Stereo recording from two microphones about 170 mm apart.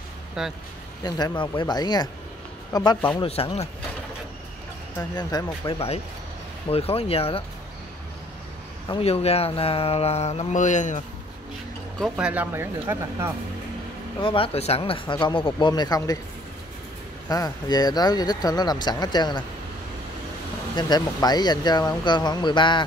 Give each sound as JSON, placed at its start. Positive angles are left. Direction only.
{"t": 0.4, "sound": "speech", "side_deg": 0}
{"t": 1.0, "sound": "speech", "side_deg": 25}
{"t": 5.1, "sound": "speech", "side_deg": 25}
{"t": 8.9, "sound": "speech", "side_deg": 35}
{"t": 12.0, "sound": "speech", "side_deg": -5}
{"t": 14.2, "sound": "speech", "side_deg": 30}
{"t": 17.3, "sound": "speech", "side_deg": 20}
{"t": 20.7, "sound": "speech", "side_deg": 25}